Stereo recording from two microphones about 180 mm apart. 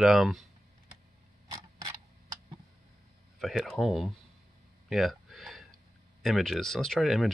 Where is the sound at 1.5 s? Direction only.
20° right (ahead or behind).